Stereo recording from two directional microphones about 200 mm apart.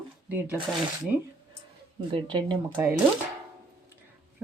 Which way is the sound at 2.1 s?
25° right (ahead or behind).